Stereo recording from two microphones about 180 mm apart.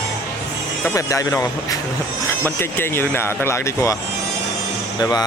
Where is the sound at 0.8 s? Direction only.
20° left (ahead or behind).